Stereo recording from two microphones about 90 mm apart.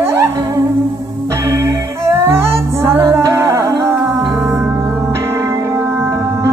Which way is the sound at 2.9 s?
30° right (ahead or behind).